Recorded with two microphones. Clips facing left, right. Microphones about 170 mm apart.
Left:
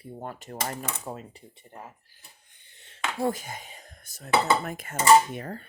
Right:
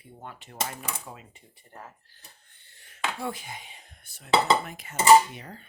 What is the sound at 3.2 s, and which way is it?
Dishes, 40° left (ahead or behind).